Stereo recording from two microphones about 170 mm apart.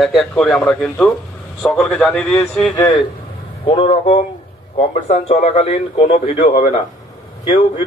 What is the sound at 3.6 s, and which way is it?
A man's voice, 35° left (ahead or behind).